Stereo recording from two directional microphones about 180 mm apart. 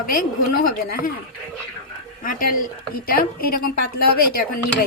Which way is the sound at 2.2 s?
50° left (ahead or behind).